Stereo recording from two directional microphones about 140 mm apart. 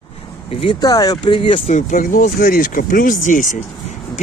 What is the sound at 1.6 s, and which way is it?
Speech, 70° left (ahead or behind).